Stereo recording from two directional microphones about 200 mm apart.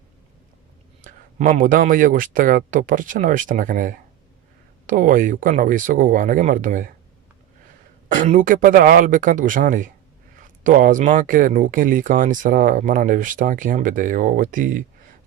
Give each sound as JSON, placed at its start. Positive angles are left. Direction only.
{"t": 1.0, "sound": "speech", "side_deg": -40}
{"t": 8.1, "sound": "speech", "side_deg": -40}